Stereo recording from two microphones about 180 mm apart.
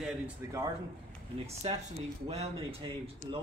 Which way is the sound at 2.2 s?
35° right (ahead or behind).